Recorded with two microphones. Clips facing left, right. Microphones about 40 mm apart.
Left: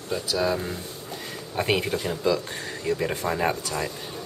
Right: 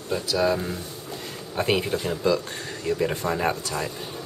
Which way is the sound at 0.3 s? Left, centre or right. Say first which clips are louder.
Right 2 dB; centre.